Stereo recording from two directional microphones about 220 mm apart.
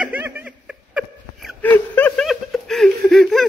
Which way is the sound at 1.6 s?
10° left (ahead or behind).